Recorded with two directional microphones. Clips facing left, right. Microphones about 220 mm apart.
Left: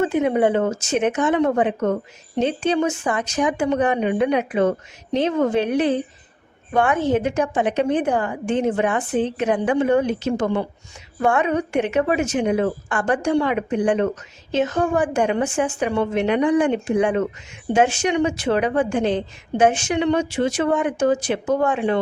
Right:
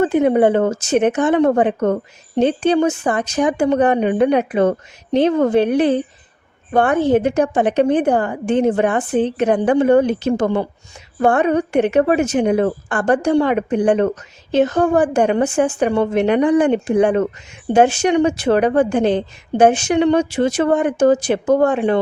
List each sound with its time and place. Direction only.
0.0 s a woman's voice: 35° right (ahead or behind)
0.8 s a woman's voice: 60° right (ahead or behind)
1.0 s a woman's voice: 35° right (ahead or behind)
5.5 s a woman's voice: 60° right (ahead or behind)
6.7 s a woman's voice: 35° right (ahead or behind)
7.6 s a woman's voice: 55° right (ahead or behind)
7.9 s a woman's voice: 35° right (ahead or behind)